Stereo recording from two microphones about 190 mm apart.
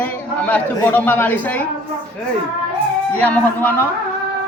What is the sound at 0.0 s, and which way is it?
A man's voice, 10° left (ahead or behind).